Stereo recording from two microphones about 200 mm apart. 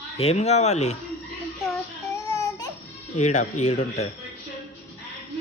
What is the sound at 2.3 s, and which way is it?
Baby cry, 15° left (ahead or behind).